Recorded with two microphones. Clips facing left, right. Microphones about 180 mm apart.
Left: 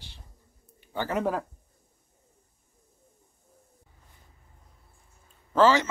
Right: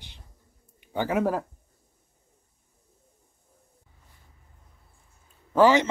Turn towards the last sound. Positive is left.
turn(degrees=-15)  # may be behind; listen again after turning